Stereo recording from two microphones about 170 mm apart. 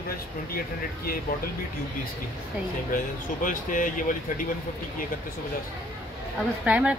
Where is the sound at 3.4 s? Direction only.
50° left (ahead or behind).